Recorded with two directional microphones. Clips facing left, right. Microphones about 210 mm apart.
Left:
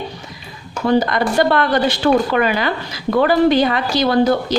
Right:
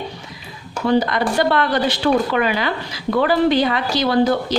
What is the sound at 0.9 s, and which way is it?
A woman's voice, 45° left (ahead or behind).